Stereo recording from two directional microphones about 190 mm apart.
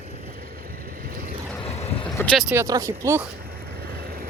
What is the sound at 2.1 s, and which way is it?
Vehicle, 5° left (ahead or behind).